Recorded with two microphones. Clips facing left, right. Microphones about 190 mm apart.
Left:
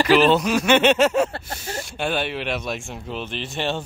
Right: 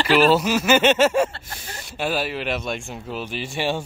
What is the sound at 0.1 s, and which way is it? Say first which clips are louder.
Speech: right 1 dB; 5° right (ahead or behind).